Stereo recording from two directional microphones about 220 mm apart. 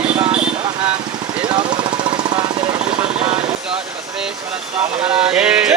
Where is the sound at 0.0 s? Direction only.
25° right (ahead or behind).